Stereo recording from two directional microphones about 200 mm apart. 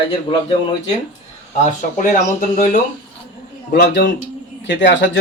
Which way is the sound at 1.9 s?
40° left (ahead or behind).